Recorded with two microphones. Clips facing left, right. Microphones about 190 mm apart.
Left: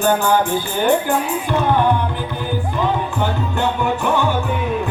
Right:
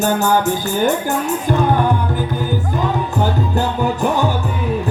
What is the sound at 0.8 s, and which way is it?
Speech, 45° right (ahead or behind).